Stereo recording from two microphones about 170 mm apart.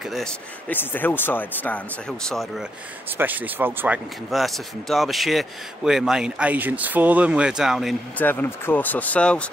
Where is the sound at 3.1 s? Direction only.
10° right (ahead or behind).